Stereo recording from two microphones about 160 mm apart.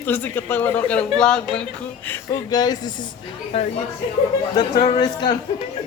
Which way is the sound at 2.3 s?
25° left (ahead or behind).